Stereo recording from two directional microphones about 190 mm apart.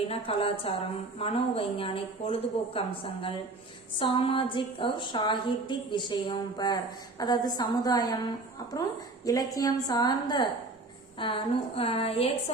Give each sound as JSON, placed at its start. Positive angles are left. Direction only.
{"t": 0.1, "sound": "a woman's voice", "side_deg": 30}
{"t": 9.2, "sound": "a woman's voice", "side_deg": 20}